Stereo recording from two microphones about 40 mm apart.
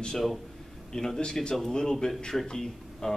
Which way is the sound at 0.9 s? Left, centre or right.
Centre.